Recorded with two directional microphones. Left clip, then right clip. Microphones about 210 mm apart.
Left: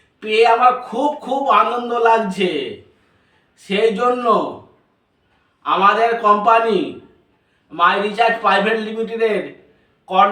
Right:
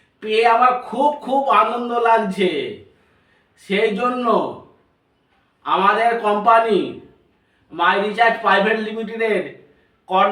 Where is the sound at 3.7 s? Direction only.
15° left (ahead or behind).